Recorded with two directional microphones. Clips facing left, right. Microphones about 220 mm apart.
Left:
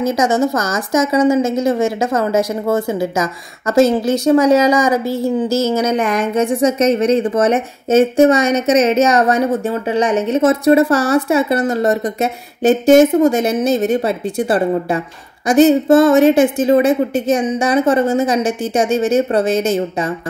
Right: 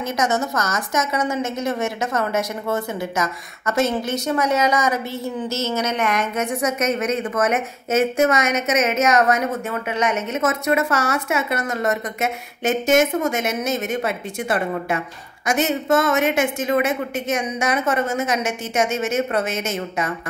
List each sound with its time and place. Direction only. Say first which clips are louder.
0.1 s a woman's voice: left 7 dB; 30° left (ahead or behind)